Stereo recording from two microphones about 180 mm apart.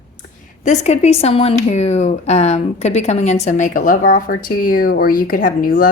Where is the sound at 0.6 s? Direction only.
40° left (ahead or behind).